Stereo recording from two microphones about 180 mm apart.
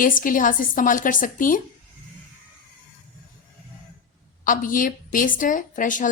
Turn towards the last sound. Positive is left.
turn(degrees=45)  # may be behind; listen again after turning